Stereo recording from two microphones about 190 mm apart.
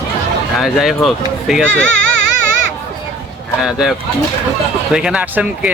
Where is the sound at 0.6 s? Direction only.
Centre (ahead or behind).